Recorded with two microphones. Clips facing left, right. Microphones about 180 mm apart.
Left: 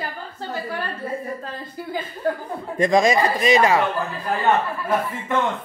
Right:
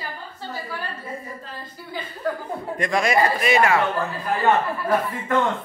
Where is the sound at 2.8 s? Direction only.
20° left (ahead or behind).